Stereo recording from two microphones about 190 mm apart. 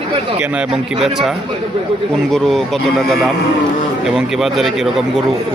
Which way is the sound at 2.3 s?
Centre (ahead or behind).